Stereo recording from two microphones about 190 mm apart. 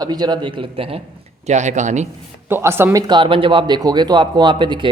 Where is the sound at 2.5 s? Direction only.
15° right (ahead or behind).